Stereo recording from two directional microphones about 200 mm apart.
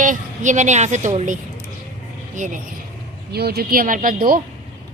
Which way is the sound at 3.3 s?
50° right (ahead or behind).